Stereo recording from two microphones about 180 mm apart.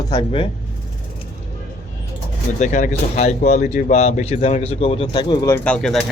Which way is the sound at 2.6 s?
45° left (ahead or behind).